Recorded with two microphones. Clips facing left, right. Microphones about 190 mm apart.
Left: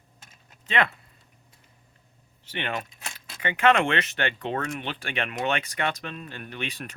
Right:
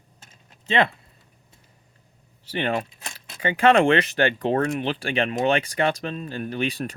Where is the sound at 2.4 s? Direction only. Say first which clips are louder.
Right 7 dB; 35° right (ahead or behind).